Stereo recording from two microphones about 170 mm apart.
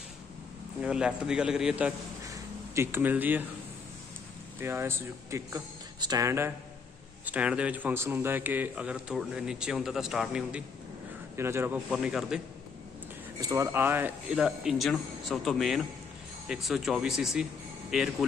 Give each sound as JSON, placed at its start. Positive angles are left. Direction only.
{"t": 0.7, "sound": "speech", "side_deg": -5}
{"t": 2.2, "sound": "a sound", "side_deg": -20}
{"t": 4.6, "sound": "a man's voice", "side_deg": -15}
{"t": 11.3, "sound": "a man's voice", "side_deg": -15}
{"t": 13.4, "sound": "speech", "side_deg": -20}